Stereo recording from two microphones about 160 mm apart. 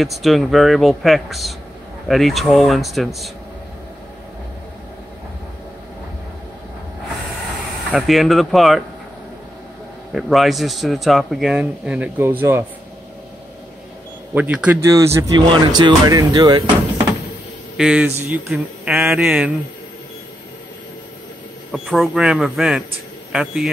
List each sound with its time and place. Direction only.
0.0 s speech: centre (ahead or behind)
7.9 s speech: centre (ahead or behind)
10.1 s speech: centre (ahead or behind)
14.3 s speech: 10° right (ahead or behind)
14.8 s speech: 20° right (ahead or behind)
17.7 s speech: 5° right (ahead or behind)
21.9 s speech: centre (ahead or behind)